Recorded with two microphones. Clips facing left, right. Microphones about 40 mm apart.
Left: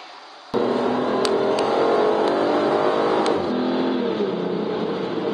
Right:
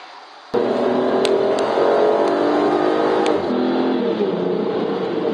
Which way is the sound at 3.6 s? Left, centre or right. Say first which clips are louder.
Right 3 dB; centre.